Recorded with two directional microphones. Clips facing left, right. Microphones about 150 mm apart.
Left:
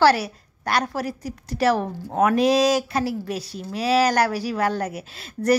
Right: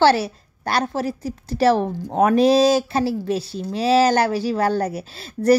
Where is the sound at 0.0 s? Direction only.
30° right (ahead or behind).